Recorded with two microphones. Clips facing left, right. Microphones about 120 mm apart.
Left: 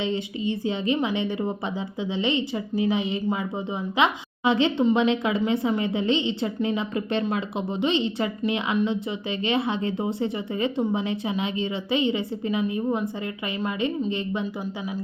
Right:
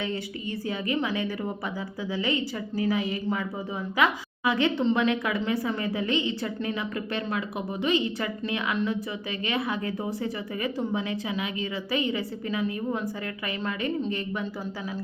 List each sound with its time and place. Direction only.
0.0 s speech: 20° left (ahead or behind)